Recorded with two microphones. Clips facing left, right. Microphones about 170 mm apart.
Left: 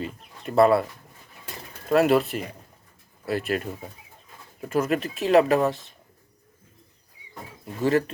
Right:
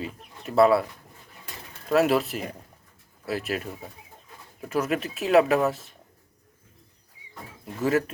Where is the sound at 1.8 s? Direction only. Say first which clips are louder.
Left 2 dB; centre (ahead or behind).